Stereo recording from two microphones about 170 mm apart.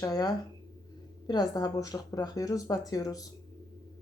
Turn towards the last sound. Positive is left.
turn(degrees=20)  # may be behind; listen again after turning